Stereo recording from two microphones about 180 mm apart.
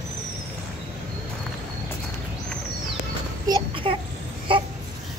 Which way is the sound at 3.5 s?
30° right (ahead or behind).